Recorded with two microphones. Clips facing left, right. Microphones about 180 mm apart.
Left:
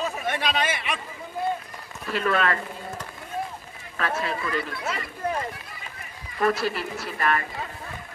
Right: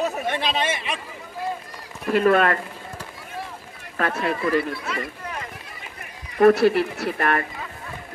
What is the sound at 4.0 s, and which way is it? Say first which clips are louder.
Speech: right 4 dB; 55° right (ahead or behind).